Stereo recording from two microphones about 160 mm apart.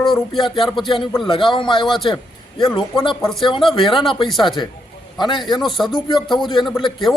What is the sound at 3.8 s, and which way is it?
Speech, centre (ahead or behind).